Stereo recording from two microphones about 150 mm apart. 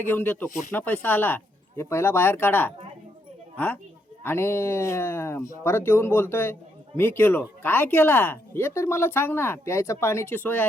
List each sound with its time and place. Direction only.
0.0 s a man's voice: 15° left (ahead or behind)
4.2 s a man's voice: 15° left (ahead or behind)